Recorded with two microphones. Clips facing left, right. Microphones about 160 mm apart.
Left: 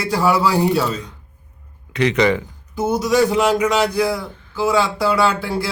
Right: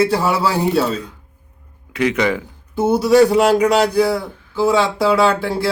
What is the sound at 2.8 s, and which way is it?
Speech, 30° right (ahead or behind).